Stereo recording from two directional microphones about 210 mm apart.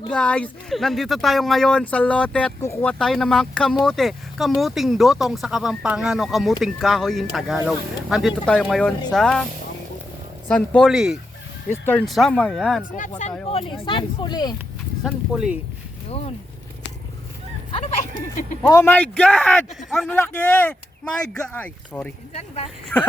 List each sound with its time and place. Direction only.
0.1 s speech: 5° left (ahead or behind)
10.5 s speech: 5° left (ahead or behind)
13.0 s speech: 35° left (ahead or behind)
15.0 s speech: 5° right (ahead or behind)
18.6 s speech: 15° left (ahead or behind)
22.3 s speech: 30° left (ahead or behind)
22.9 s speech: 10° left (ahead or behind)